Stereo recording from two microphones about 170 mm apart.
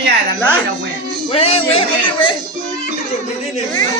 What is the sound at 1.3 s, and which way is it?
Music, 35° left (ahead or behind).